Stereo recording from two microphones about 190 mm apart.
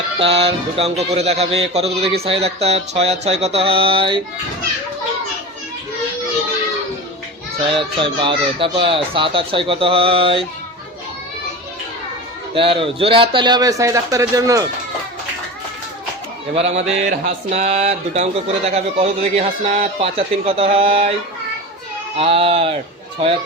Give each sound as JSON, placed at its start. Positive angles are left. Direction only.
{"t": 0.2, "sound": "a man's voice", "side_deg": -30}
{"t": 7.7, "sound": "speech", "side_deg": -25}
{"t": 12.5, "sound": "speech", "side_deg": -25}
{"t": 16.6, "sound": "a man's voice", "side_deg": -35}
{"t": 22.2, "sound": "speech", "side_deg": -30}